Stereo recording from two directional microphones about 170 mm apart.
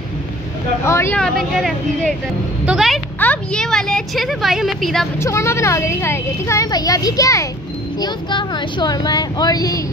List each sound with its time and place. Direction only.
0.8 s a woman's voice: 15° left (ahead or behind)
1.2 s a woman's voice: centre (ahead or behind)
5.2 s a woman's voice: 15° left (ahead or behind)